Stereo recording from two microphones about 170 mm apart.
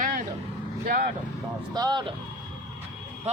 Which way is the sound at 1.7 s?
25° right (ahead or behind).